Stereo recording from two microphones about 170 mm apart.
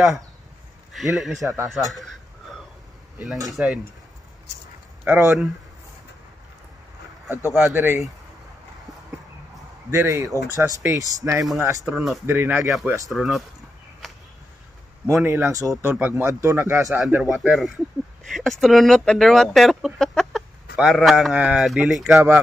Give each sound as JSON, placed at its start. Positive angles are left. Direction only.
{"t": 0.9, "sound": "speech", "side_deg": 0}
{"t": 3.5, "sound": "speech", "side_deg": -5}
{"t": 5.0, "sound": "speech", "side_deg": -10}
{"t": 7.7, "sound": "speech", "side_deg": -15}
{"t": 9.8, "sound": "speech", "side_deg": -15}
{"t": 11.8, "sound": "speech", "side_deg": 0}
{"t": 12.3, "sound": "speech", "side_deg": -10}
{"t": 14.0, "sound": "a sound", "side_deg": 5}
{"t": 15.0, "sound": "speech", "side_deg": -15}
{"t": 17.0, "sound": "speech", "side_deg": -5}